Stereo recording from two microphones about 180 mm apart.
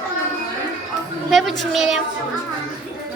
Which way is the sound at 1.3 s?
Centre (ahead or behind).